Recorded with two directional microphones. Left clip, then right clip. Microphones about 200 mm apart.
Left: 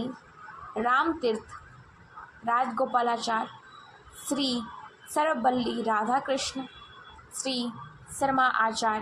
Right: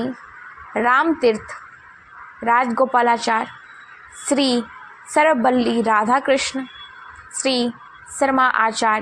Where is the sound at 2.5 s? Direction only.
35° right (ahead or behind).